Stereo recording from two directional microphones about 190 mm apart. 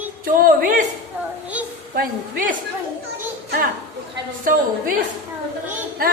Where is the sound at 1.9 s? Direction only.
45° right (ahead or behind).